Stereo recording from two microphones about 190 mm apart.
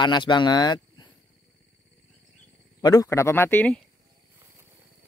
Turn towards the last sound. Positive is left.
turn(degrees=5)  # may be behind; listen again after turning